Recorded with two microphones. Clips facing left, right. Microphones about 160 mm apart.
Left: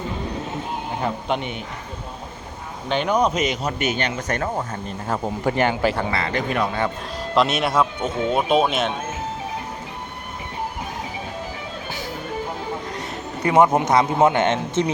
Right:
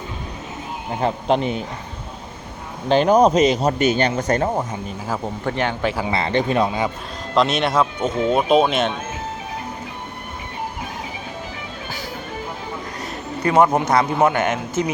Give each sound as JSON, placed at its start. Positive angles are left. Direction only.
{"t": 1.0, "sound": "speech", "side_deg": -35}
{"t": 2.9, "sound": "speech", "side_deg": -35}
{"t": 4.7, "sound": "speech", "side_deg": -5}
{"t": 6.1, "sound": "a man's voice", "side_deg": -25}
{"t": 7.3, "sound": "speech", "side_deg": 5}
{"t": 13.0, "sound": "a man's voice", "side_deg": 20}